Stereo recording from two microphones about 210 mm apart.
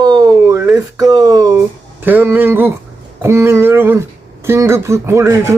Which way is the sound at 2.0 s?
10° right (ahead or behind).